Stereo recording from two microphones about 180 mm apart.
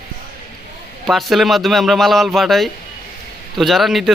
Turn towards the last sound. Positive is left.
turn(degrees=0)  # may be behind; listen again after turning